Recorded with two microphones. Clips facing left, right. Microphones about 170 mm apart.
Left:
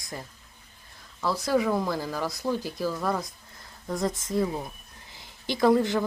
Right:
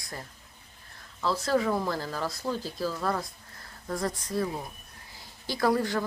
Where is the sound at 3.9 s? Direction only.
20° left (ahead or behind).